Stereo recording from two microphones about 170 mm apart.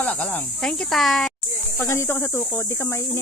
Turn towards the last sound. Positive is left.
turn(degrees=15)  # may be behind; listen again after turning